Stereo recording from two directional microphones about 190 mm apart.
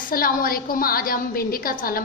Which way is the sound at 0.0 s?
50° left (ahead or behind).